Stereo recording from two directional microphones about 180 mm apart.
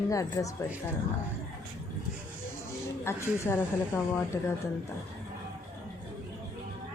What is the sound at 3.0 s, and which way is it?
A woman's voice, 15° left (ahead or behind).